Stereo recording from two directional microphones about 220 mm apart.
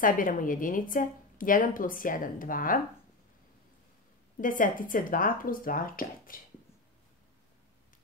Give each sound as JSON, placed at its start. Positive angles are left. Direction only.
{"t": 0.0, "sound": "a woman's voice", "side_deg": 40}
{"t": 4.4, "sound": "a woman's voice", "side_deg": 40}